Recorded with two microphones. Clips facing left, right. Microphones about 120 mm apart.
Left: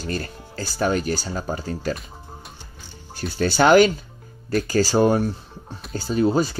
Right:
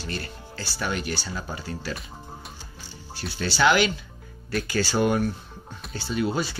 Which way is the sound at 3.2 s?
45° left (ahead or behind).